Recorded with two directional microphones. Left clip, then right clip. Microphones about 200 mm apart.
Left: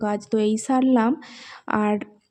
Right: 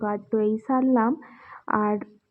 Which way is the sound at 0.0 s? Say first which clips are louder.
Left 2 dB; 35° left (ahead or behind).